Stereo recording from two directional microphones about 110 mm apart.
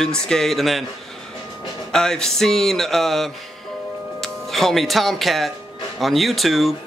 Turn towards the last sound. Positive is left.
turn(degrees=0)  # may be behind; listen again after turning